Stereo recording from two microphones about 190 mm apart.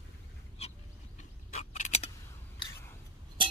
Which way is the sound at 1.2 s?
40° left (ahead or behind).